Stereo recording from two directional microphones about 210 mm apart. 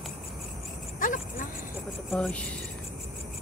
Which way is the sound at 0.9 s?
40° left (ahead or behind).